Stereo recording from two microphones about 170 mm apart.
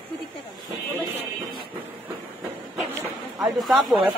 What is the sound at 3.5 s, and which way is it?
Speech, centre (ahead or behind).